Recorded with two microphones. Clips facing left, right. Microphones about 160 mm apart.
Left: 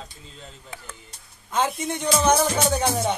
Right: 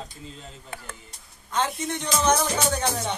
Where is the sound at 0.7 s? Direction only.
60° right (ahead or behind).